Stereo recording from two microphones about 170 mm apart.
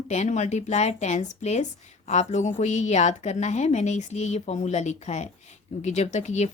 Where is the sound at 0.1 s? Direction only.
45° left (ahead or behind).